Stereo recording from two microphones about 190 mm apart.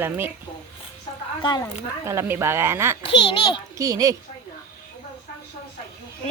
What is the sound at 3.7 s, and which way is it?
Speech, 20° right (ahead or behind).